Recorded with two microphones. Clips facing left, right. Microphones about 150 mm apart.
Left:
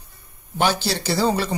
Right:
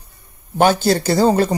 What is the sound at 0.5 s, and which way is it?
Speech, 50° right (ahead or behind).